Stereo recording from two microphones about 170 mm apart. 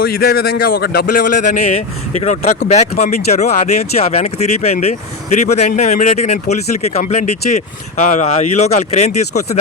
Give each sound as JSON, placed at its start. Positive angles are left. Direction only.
{"t": 0.0, "sound": "speech", "side_deg": 65}
{"t": 4.7, "sound": "speech", "side_deg": 40}